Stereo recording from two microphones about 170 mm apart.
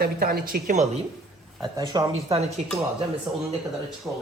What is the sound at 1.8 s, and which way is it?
Speech, 20° right (ahead or behind).